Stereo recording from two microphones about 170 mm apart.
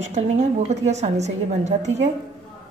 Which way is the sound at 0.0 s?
40° right (ahead or behind).